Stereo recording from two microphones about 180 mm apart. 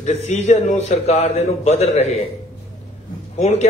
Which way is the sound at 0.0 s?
35° left (ahead or behind).